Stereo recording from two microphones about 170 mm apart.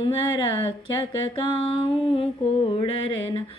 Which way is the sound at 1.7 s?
35° left (ahead or behind).